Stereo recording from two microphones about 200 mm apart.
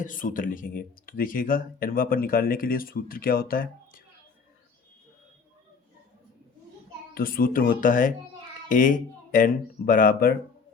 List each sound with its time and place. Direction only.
0.0 s speech: 40° left (ahead or behind)
7.1 s speech: 45° left (ahead or behind)